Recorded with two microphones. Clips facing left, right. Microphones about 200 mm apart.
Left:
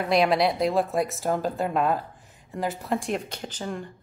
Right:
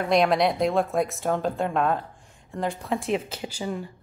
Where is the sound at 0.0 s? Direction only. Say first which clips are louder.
Right 1 dB; centre (ahead or behind).